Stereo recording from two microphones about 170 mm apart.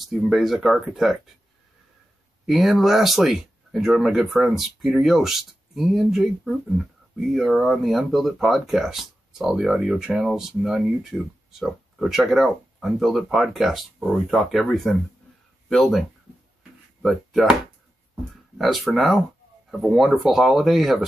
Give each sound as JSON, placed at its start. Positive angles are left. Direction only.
{"t": 0.0, "sound": "speech", "side_deg": 0}
{"t": 2.4, "sound": "speech", "side_deg": 0}
{"t": 18.6, "sound": "speech", "side_deg": 0}